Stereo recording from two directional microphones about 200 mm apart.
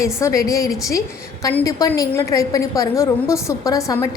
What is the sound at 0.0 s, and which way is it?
A woman's voice, 15° left (ahead or behind).